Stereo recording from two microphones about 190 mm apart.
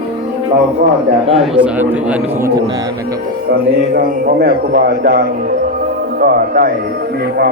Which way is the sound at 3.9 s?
50° right (ahead or behind).